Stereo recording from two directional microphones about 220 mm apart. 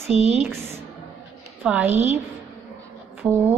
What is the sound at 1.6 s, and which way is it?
Speech, 5° right (ahead or behind).